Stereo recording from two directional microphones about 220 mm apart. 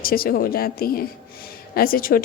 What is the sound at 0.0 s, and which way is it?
A woman's voice, 40° left (ahead or behind).